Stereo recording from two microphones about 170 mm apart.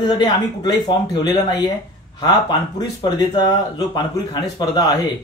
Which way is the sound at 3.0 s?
25° left (ahead or behind).